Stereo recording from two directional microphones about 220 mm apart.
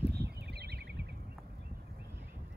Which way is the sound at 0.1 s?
50° right (ahead or behind).